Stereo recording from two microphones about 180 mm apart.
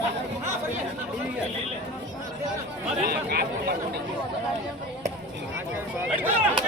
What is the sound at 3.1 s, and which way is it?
Chatter, 60° right (ahead or behind).